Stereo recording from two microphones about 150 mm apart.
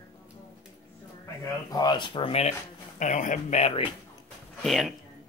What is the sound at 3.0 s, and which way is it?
Speech, 55° left (ahead or behind).